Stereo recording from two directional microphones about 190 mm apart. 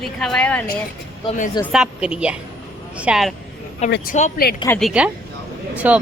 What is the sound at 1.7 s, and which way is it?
Speech, 5° right (ahead or behind).